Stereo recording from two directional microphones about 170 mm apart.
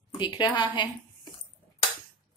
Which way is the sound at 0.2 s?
25° left (ahead or behind).